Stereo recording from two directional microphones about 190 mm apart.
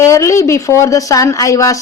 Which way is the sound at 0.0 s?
15° left (ahead or behind).